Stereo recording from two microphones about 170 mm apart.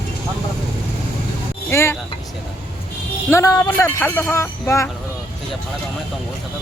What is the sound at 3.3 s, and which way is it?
Speech, 20° left (ahead or behind).